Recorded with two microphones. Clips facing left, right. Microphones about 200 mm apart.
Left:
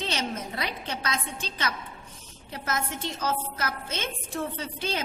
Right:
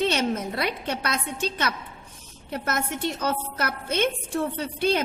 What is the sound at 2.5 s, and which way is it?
A woman's voice, 60° right (ahead or behind).